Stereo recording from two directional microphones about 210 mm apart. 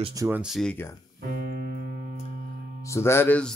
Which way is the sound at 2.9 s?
10° left (ahead or behind).